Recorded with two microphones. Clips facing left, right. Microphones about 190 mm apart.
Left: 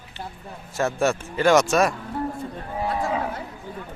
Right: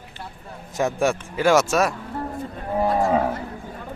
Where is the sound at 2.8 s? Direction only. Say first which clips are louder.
Right 5 dB; 55° right (ahead or behind).